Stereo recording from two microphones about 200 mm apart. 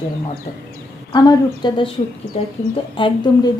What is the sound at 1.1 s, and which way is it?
Speech, 20° left (ahead or behind).